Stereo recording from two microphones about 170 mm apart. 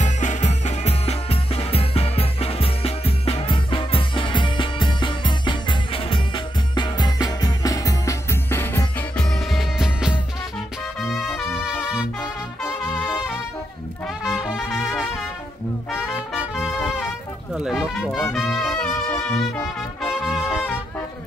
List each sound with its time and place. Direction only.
0.0 s music: 45° left (ahead or behind); by 10.1 s 5° right (ahead or behind)
11.0 s brass instrument: centre (ahead or behind)
12.8 s brass instrument: 5° left (ahead or behind)
14.2 s brass instrument: centre (ahead or behind)
15.9 s music: 5° right (ahead or behind)